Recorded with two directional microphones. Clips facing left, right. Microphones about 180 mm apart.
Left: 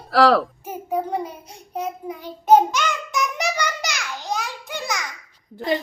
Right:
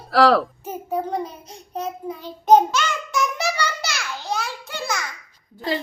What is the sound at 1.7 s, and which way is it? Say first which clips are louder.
Child singing: even; 10° left (ahead or behind).